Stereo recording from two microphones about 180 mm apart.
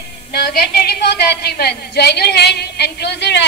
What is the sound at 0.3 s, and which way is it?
A woman's voice, 60° left (ahead or behind).